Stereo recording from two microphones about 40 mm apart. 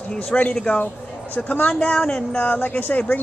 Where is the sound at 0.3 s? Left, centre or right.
Left.